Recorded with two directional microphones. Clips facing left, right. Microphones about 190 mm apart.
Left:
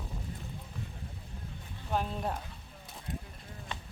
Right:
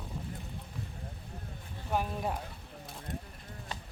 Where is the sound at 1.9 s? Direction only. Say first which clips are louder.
Even; 10° right (ahead or behind).